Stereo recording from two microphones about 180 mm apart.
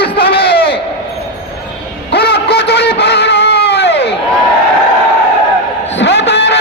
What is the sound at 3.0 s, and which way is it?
Music, 65° left (ahead or behind).